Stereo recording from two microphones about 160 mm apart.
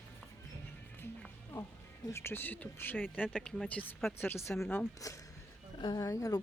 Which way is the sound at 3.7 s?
10° left (ahead or behind).